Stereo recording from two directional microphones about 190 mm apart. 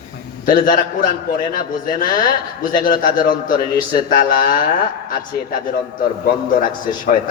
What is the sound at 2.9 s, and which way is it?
Speech, 45° left (ahead or behind).